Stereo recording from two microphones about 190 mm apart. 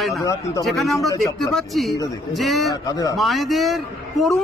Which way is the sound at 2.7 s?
20° left (ahead or behind).